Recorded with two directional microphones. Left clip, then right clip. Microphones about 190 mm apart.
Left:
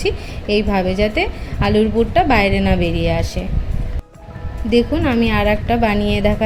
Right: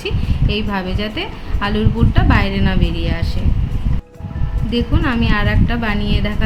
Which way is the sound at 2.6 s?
20° left (ahead or behind).